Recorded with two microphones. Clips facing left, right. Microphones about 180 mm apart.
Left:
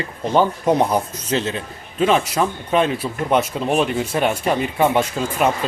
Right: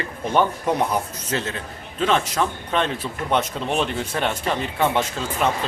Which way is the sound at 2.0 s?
10° left (ahead or behind).